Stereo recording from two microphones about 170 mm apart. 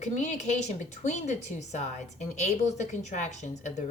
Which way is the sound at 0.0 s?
45° left (ahead or behind).